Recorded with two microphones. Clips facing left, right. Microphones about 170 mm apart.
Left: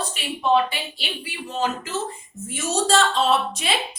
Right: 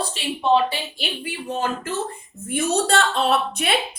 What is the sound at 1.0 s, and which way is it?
A woman's voice, 55° right (ahead or behind).